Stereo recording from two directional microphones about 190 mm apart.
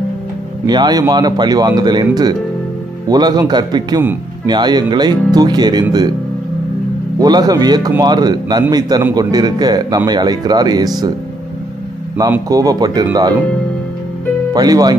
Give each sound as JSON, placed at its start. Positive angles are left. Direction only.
{"t": 0.7, "sound": "a man's voice", "side_deg": -20}
{"t": 3.1, "sound": "a man's voice", "side_deg": -20}
{"t": 7.2, "sound": "a man's voice", "side_deg": -20}
{"t": 12.3, "sound": "a man's voice", "side_deg": -20}
{"t": 14.5, "sound": "a man's voice", "side_deg": -20}